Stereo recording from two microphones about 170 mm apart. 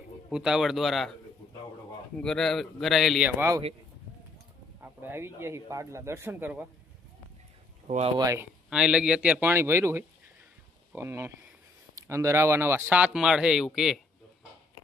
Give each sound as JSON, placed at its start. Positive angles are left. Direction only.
{"t": 0.3, "sound": "speech", "side_deg": -5}
{"t": 2.1, "sound": "speech", "side_deg": 5}
{"t": 3.2, "sound": "speech", "side_deg": -15}
{"t": 4.8, "sound": "speech", "side_deg": -10}
{"t": 7.9, "sound": "speech", "side_deg": -45}
{"t": 8.2, "sound": "speech", "side_deg": -20}
{"t": 8.7, "sound": "speech", "side_deg": -5}